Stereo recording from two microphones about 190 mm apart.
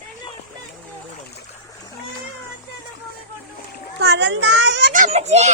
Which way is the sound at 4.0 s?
65° right (ahead or behind).